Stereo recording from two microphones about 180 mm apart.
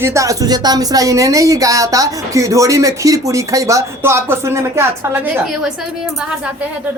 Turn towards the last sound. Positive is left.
turn(degrees=-15)  # may be behind; listen again after turning